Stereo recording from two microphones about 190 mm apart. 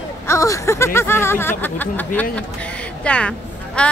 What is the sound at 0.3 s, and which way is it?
A woman's voice, 15° left (ahead or behind).